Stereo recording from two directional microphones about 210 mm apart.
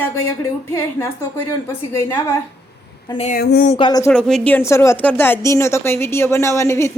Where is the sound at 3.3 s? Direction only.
45° left (ahead or behind).